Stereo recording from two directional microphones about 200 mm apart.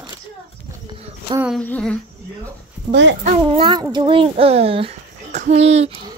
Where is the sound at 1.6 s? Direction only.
5° left (ahead or behind).